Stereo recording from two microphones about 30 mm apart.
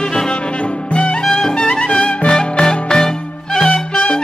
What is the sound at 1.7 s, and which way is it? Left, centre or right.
Music, left.